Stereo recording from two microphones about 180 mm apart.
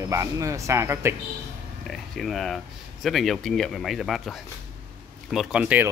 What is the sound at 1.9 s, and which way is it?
Speech, centre (ahead or behind).